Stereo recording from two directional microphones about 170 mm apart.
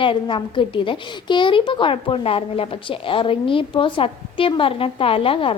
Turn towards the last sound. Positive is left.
turn(degrees=30)  # may be behind; listen again after turning